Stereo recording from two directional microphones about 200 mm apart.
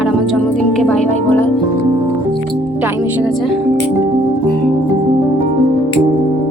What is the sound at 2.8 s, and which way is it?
Speech, 5° right (ahead or behind).